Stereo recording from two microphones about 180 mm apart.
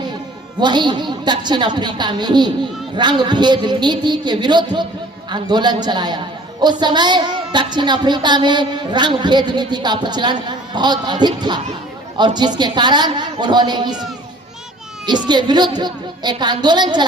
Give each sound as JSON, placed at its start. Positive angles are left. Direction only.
{"t": 0.6, "sound": "a woman's voice", "side_deg": -25}
{"t": 15.3, "sound": "a woman's voice", "side_deg": -25}